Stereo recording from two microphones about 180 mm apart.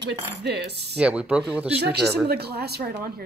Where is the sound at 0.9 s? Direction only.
5° right (ahead or behind).